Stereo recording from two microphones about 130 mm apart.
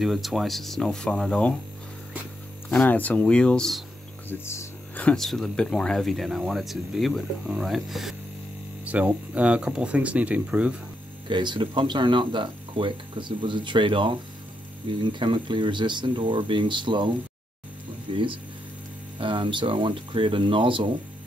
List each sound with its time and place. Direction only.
0.0 s speech: centre (ahead or behind)
2.7 s speech: 10° left (ahead or behind)
4.3 s hum: 15° left (ahead or behind)
5.0 s speech: 5° left (ahead or behind)
11.2 s speech: 35° right (ahead or behind)
18.1 s speech: 40° right (ahead or behind)